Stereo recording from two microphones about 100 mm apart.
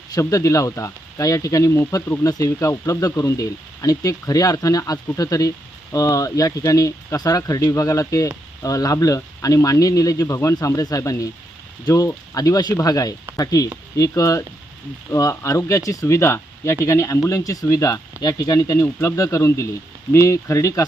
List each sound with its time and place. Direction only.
0.1 s speech: 35° left (ahead or behind)